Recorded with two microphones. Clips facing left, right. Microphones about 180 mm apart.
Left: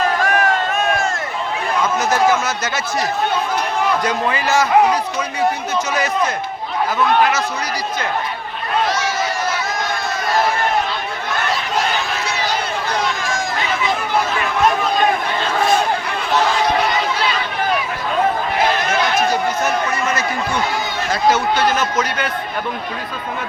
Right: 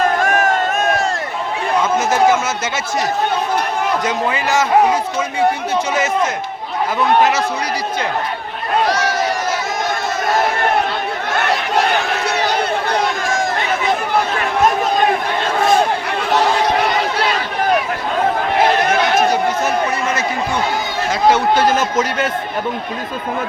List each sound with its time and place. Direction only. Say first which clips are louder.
0.2 s run: right 2 dB; 45° right (ahead or behind)
4.4 s a man's voice: even; 20° right (ahead or behind)
7.2 s a man's voice: right 3 dB; 20° right (ahead or behind)
11.3 s a sound: right 4 dB; 65° right (ahead or behind)
21.5 s speech: right 3 dB; 45° right (ahead or behind)
21.8 s a man's voice: right 3 dB; 25° right (ahead or behind)